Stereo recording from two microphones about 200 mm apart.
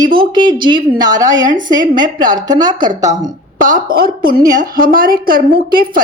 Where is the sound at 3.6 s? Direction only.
40° right (ahead or behind).